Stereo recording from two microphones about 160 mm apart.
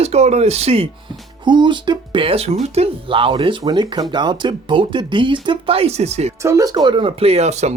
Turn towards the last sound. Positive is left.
turn(degrees=-45)  # may be behind; listen again after turning